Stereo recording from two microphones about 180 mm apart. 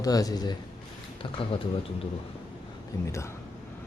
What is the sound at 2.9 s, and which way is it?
Speech, 15° left (ahead or behind).